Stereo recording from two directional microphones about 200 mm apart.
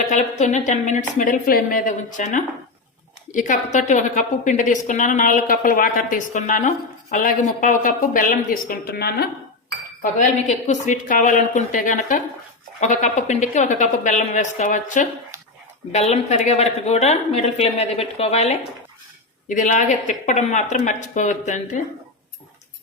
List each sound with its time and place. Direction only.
0.0 s a woman's voice: 35° left (ahead or behind); by 9.2 s 50° left (ahead or behind)
10.0 s a woman's voice: 40° left (ahead or behind)